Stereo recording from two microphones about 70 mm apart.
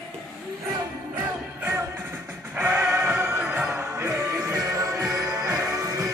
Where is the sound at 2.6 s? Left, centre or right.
Right.